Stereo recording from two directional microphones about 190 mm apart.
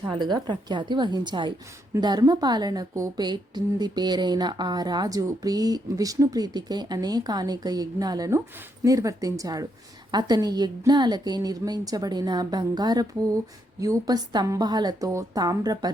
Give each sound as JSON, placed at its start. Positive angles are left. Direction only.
{"t": 0.1, "sound": "a woman's voice", "side_deg": -25}